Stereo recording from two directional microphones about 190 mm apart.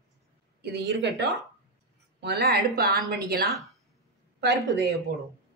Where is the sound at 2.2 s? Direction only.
60° right (ahead or behind).